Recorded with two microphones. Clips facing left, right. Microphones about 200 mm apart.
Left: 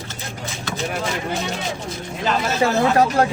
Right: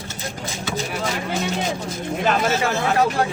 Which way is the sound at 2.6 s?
40° left (ahead or behind).